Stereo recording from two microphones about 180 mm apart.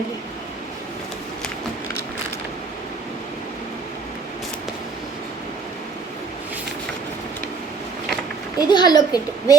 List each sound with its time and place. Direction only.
8.5 s a woman's voice: 25° left (ahead or behind)